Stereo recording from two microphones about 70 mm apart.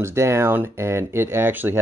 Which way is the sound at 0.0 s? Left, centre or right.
Right.